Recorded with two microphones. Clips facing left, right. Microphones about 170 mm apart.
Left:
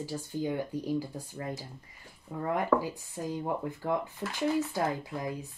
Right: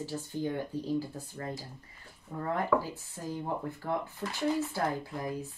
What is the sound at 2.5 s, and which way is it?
Speech, 15° left (ahead or behind).